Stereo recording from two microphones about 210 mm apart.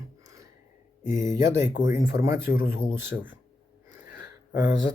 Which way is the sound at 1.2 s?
15° right (ahead or behind).